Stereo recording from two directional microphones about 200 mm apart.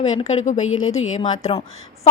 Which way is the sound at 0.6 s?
90° left.